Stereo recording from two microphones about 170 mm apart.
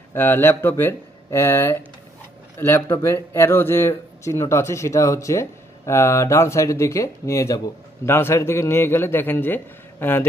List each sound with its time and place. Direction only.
0.1 s speech: 15° left (ahead or behind)